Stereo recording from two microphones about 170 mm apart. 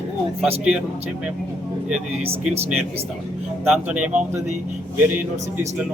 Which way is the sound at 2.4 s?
5° right (ahead or behind).